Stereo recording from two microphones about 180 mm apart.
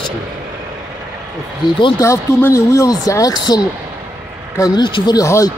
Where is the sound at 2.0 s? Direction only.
15° left (ahead or behind).